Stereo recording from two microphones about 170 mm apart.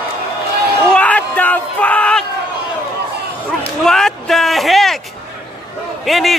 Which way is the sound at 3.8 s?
5° left (ahead or behind).